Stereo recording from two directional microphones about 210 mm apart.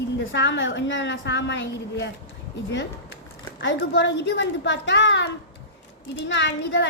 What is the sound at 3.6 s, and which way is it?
Speech, 60° left (ahead or behind).